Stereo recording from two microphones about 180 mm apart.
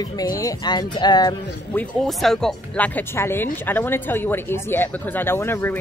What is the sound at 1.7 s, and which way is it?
A woman's voice, centre (ahead or behind).